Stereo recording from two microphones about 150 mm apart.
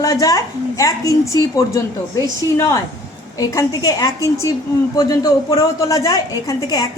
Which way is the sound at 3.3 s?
20° left (ahead or behind).